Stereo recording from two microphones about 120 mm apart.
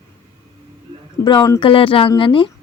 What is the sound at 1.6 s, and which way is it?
Speech, 45° left (ahead or behind).